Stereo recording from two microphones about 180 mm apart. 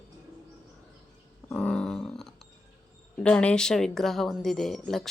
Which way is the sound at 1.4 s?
5° left (ahead or behind).